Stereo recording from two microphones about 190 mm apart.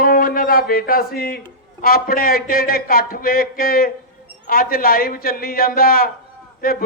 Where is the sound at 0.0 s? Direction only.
50° left (ahead or behind).